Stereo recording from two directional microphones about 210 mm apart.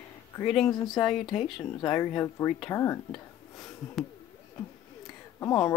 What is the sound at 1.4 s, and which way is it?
Speech, 25° left (ahead or behind).